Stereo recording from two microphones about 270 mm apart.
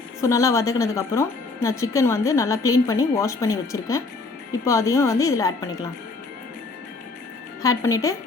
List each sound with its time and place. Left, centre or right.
0.2 s a woman's voice: centre
7.6 s a woman's voice: centre